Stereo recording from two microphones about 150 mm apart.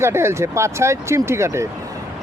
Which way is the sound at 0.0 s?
15° right (ahead or behind).